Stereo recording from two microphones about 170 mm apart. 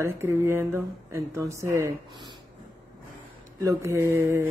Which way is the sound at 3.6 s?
15° right (ahead or behind).